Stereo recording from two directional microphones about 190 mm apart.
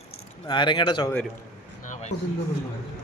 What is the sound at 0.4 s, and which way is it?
Speech, 25° left (ahead or behind).